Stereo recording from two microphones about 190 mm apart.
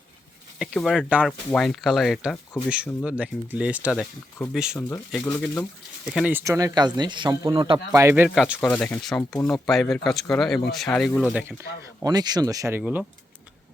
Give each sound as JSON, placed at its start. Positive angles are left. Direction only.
{"t": 0.6, "sound": "speech", "side_deg": 0}
{"t": 5.2, "sound": "speech", "side_deg": 10}
{"t": 6.1, "sound": "speech", "side_deg": -10}
{"t": 7.9, "sound": "speech", "side_deg": -10}
{"t": 8.6, "sound": "speech", "side_deg": 10}
{"t": 12.0, "sound": "speech", "side_deg": -20}